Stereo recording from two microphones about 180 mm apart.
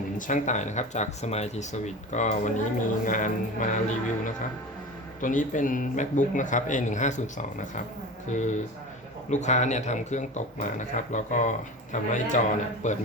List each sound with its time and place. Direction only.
0.2 s a man's voice: 45° left (ahead or behind)